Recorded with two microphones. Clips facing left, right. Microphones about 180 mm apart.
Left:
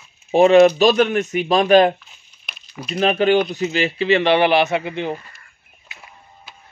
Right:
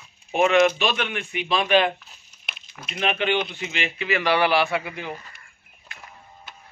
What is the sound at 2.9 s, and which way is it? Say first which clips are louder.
Speech: left 8 dB; 35° left (ahead or behind).